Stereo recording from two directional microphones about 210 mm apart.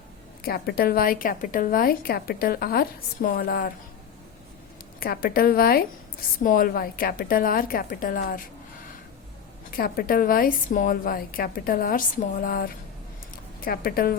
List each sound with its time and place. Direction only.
0.4 s a woman's voice: 45° left (ahead or behind)
4.9 s a woman's voice: 45° left (ahead or behind)
9.7 s a woman's voice: 45° left (ahead or behind)